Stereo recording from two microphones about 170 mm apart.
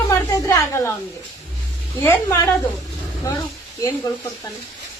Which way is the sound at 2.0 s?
15° left (ahead or behind).